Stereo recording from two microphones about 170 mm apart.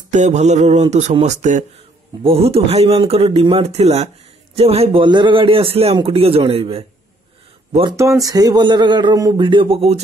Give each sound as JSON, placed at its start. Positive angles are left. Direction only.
{"t": 0.1, "sound": "a man's voice", "side_deg": -45}
{"t": 7.9, "sound": "speech", "side_deg": -20}